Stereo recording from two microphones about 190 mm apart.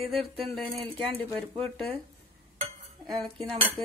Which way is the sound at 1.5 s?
30° right (ahead or behind).